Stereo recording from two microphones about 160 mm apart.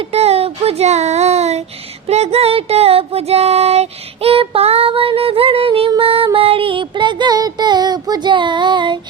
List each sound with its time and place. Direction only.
0.0 s child singing: 40° right (ahead or behind)
2.0 s music: 40° right (ahead or behind)
6.0 s female singing: 35° right (ahead or behind)